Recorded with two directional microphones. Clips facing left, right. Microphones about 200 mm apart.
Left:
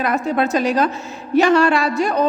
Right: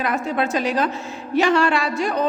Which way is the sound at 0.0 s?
40° left (ahead or behind).